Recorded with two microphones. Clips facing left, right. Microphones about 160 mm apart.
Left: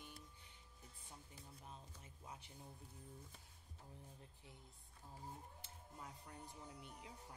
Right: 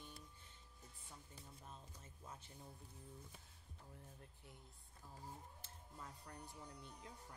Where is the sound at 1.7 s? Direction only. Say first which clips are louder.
Even; 15° left (ahead or behind).